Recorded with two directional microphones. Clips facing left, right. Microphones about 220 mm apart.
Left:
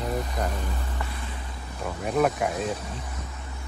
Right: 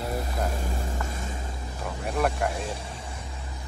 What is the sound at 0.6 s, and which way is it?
Vehicle, 45° right (ahead or behind).